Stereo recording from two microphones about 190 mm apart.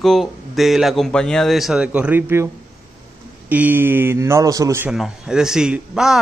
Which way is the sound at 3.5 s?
10° right (ahead or behind).